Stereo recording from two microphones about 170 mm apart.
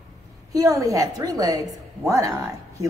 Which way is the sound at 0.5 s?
20° right (ahead or behind).